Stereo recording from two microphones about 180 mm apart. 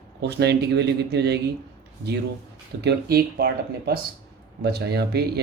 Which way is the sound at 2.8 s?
65° right (ahead or behind).